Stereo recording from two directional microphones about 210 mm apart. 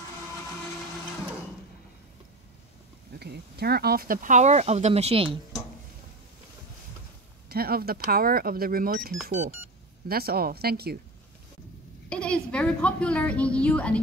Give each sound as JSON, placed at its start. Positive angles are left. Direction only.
{"t": 3.2, "sound": "speech", "side_deg": -50}
{"t": 7.4, "sound": "speech", "side_deg": -45}
{"t": 12.1, "sound": "a woman's voice", "side_deg": 5}